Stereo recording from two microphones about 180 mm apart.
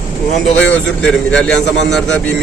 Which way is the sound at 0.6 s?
5° left (ahead or behind).